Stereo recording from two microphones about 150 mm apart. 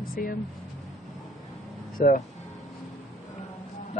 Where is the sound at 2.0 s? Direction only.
65° left (ahead or behind).